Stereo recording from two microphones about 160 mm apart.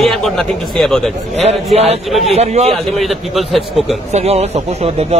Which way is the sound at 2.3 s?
45° right (ahead or behind).